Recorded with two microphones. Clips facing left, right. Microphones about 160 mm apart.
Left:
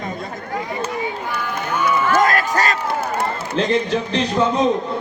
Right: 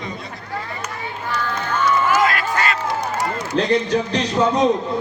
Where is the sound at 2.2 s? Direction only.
40° left (ahead or behind).